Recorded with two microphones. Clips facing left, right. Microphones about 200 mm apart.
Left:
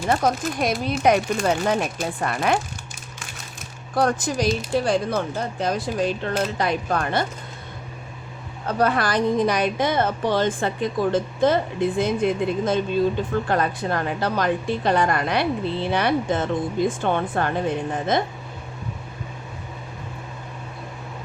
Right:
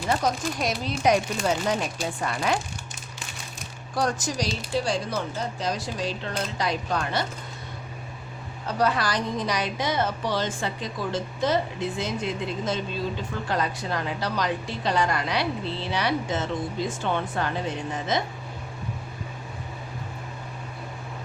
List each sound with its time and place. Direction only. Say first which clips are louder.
0.1 s a woman's voice: left 4 dB; 55° left (ahead or behind)
3.9 s a woman's voice: left 5 dB; 55° left (ahead or behind)
8.6 s a woman's voice: left 3 dB; 55° left (ahead or behind)